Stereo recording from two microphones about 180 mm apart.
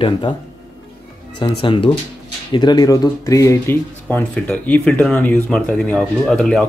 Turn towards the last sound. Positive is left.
turn(degrees=5)  # may be behind; listen again after turning